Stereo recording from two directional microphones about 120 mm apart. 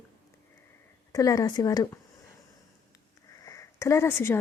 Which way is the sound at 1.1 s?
30° left (ahead or behind).